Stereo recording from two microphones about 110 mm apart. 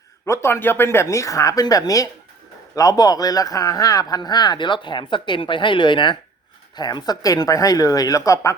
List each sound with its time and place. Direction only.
0.3 s speech: 25° left (ahead or behind)